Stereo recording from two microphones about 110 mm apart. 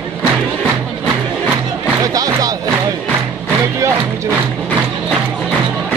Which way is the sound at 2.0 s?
35° right (ahead or behind).